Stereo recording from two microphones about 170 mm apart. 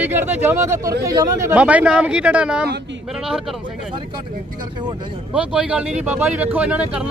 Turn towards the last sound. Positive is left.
turn(degrees=-5)  # may be behind; listen again after turning